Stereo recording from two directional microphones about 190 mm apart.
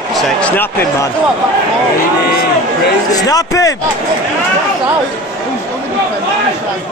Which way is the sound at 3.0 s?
20° left (ahead or behind).